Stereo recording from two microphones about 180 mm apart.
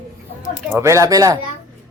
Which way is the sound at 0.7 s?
15° right (ahead or behind).